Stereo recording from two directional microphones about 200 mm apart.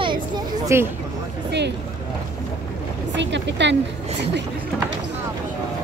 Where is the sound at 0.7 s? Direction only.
15° right (ahead or behind).